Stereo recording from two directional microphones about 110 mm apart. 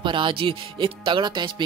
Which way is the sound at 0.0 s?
50° right (ahead or behind).